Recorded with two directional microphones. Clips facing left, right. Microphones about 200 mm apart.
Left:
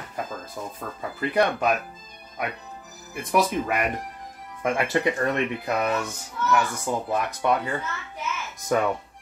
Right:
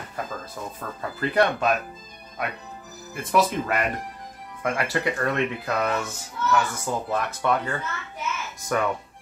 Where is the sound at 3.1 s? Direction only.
15° left (ahead or behind).